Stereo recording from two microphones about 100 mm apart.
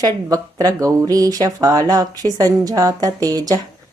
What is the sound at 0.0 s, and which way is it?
Speech, 35° right (ahead or behind).